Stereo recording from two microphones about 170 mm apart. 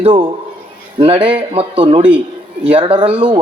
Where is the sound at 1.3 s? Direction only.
30° right (ahead or behind).